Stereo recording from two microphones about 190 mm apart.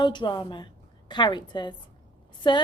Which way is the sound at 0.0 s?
25° left (ahead or behind).